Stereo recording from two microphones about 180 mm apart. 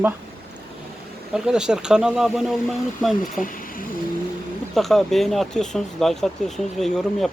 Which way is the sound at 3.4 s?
50° left (ahead or behind).